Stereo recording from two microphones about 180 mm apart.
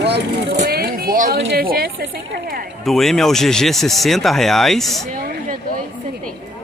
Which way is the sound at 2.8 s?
Centre (ahead or behind).